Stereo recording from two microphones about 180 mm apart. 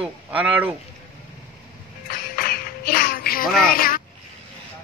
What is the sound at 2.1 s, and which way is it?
Music, 55° left (ahead or behind).